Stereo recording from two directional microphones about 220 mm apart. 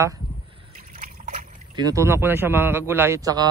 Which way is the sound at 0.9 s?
35° right (ahead or behind).